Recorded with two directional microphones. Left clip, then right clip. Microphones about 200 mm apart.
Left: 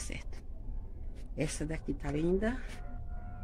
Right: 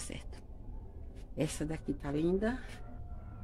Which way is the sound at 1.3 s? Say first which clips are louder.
Even; 10° right (ahead or behind).